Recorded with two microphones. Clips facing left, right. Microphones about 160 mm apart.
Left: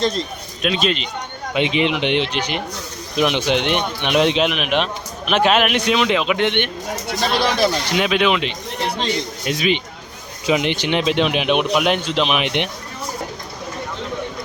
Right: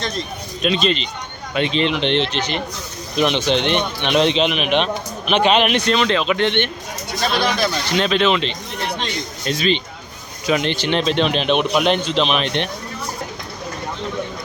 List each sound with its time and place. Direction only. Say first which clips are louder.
0.6 s speech: right 1 dB; 5° left (ahead or behind)